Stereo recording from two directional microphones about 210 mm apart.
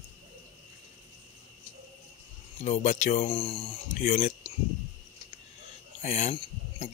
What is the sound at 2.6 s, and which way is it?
Speech, 35° left (ahead or behind).